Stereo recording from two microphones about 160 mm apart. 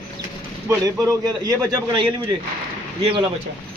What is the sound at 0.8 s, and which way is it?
A man's voice, 20° right (ahead or behind).